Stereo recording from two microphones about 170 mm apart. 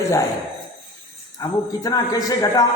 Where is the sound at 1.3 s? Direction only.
20° left (ahead or behind).